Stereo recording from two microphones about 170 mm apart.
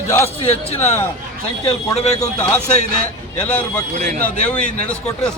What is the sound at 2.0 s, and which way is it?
Speech, 40° left (ahead or behind).